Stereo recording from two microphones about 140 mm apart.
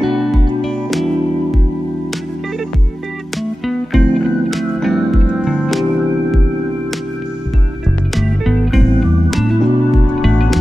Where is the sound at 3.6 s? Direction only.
Centre (ahead or behind).